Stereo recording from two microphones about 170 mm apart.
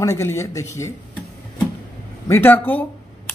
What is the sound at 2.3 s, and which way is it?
Speech, 10° left (ahead or behind).